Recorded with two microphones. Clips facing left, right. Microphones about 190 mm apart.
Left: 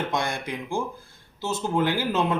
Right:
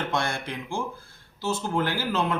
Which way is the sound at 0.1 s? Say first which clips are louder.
Left 1 dB; 15° left (ahead or behind).